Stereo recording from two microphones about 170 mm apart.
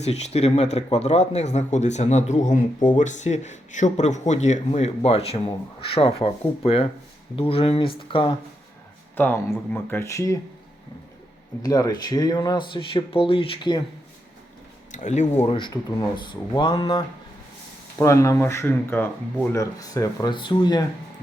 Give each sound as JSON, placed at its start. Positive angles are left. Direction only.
{"t": 0.0, "sound": "speech", "side_deg": 40}
{"t": 9.1, "sound": "speech", "side_deg": 10}
{"t": 11.6, "sound": "speech", "side_deg": 20}
{"t": 14.9, "sound": "speech", "side_deg": 45}